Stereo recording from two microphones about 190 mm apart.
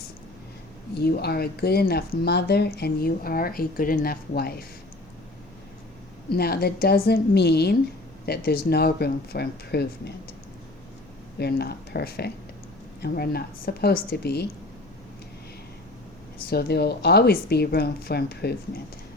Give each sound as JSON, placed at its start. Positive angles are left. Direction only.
{"t": 0.9, "sound": "speech", "side_deg": 55}
{"t": 6.3, "sound": "speech", "side_deg": 55}
{"t": 11.3, "sound": "speech", "side_deg": 55}
{"t": 16.5, "sound": "speech", "side_deg": 55}